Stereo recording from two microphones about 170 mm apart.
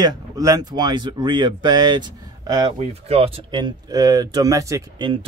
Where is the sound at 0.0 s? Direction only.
20° right (ahead or behind).